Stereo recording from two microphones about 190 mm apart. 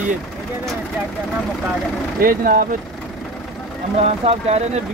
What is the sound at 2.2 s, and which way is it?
Speech, 45° right (ahead or behind).